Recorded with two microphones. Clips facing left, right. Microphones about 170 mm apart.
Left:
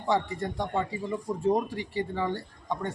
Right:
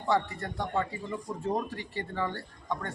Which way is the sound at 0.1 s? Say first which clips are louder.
Left 1 dB; 15° left (ahead or behind).